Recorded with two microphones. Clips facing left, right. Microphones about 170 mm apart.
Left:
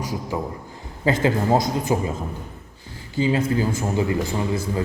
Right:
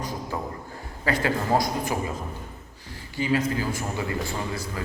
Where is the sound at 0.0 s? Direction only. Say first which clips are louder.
Left 4 dB; 10° left (ahead or behind).